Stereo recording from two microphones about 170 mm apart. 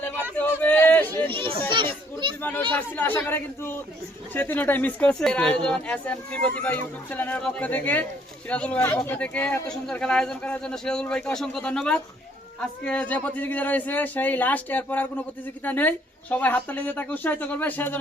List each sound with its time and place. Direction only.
0.3 s a sound: 10° left (ahead or behind)
1.3 s children playing: 30° right (ahead or behind)
2.7 s speech: 10° left (ahead or behind)